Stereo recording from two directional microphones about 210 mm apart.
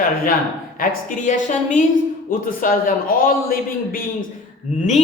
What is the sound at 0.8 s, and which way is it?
A man's voice, 40° left (ahead or behind).